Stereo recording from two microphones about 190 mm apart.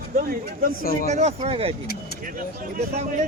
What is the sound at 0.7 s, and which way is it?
Speech, 50° left (ahead or behind).